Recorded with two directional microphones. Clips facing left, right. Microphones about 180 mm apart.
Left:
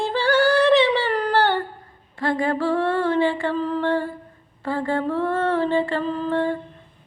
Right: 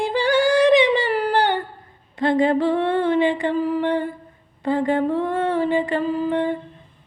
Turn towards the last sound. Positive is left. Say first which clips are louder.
# right 2 dB
turn(degrees=-15)  # may be behind; listen again after turning